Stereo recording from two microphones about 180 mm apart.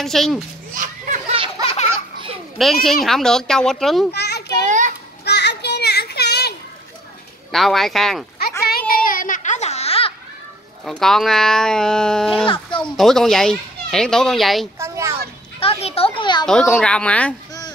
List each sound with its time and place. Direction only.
0.0 s a child's voice: centre (ahead or behind)
0.8 s speech: 45° right (ahead or behind)
1.6 s a sound: 30° left (ahead or behind)
2.5 s a child's voice: centre (ahead or behind)
4.1 s children playing: 65° left (ahead or behind)
4.6 s children playing: 45° right (ahead or behind)
5.2 s children playing: 70° left (ahead or behind)
7.5 s a child's voice: centre (ahead or behind)
8.4 s a sound: 60° left (ahead or behind); by 10.1 s 35° left (ahead or behind)
10.9 s a child's voice: centre (ahead or behind)
14.8 s a sound: 15° right (ahead or behind)
15.6 s a sound: 35° left (ahead or behind)
16.4 s a child's voice: 5° left (ahead or behind)